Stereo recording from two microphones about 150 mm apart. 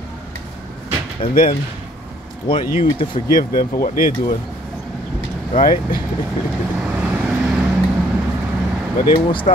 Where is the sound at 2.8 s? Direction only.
35° left (ahead or behind).